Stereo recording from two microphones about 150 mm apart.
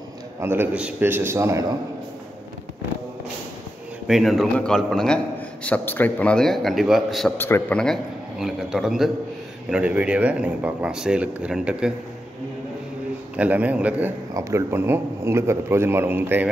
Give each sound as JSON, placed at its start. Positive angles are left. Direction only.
{"t": 0.4, "sound": "speech", "side_deg": -15}
{"t": 4.1, "sound": "a man's voice", "side_deg": 0}
{"t": 7.3, "sound": "a man's voice", "side_deg": 15}
{"t": 13.4, "sound": "speech", "side_deg": -10}